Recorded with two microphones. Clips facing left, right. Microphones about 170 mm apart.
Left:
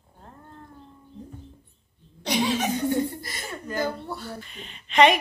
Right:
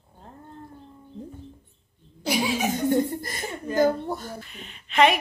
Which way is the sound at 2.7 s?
45° right (ahead or behind).